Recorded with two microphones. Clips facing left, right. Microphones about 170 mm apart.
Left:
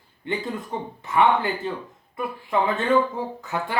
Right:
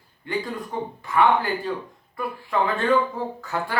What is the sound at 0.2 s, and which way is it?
A man's voice, 20° left (ahead or behind).